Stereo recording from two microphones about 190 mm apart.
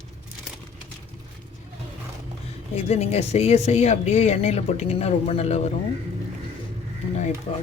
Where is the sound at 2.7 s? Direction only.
35° left (ahead or behind).